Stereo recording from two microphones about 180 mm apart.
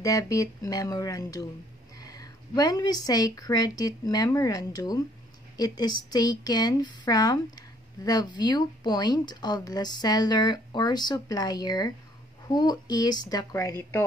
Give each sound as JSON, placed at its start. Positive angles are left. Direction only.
{"t": 0.0, "sound": "speech", "side_deg": 20}